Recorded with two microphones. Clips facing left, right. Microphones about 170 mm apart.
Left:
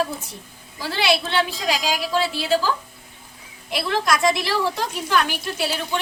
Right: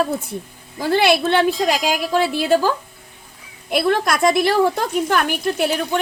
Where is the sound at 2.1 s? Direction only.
50° right (ahead or behind).